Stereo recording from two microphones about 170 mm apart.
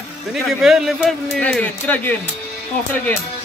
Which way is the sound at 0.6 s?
Centre (ahead or behind).